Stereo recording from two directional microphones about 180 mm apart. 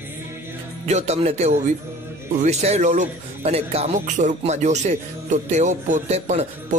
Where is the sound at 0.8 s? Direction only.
40° right (ahead or behind).